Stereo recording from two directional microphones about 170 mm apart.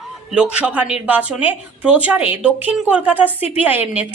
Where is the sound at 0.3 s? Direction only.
5° right (ahead or behind).